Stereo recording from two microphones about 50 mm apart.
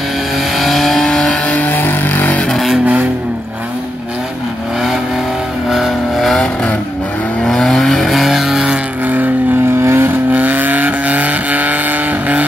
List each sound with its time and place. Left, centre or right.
0.6 s vehicle: centre
1.5 s a sound: left
2.5 s vehicle: centre
2.8 s vehicle: right
5.7 s vehicle: centre
6.3 s vehicle: centre
9.0 s vehicle: right
9.8 s vehicle: right
10.3 s vehicle: right